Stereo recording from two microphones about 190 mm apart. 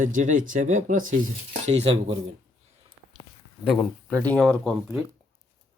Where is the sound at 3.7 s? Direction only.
5° left (ahead or behind).